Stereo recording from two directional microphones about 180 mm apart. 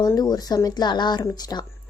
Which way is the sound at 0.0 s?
20° left (ahead or behind).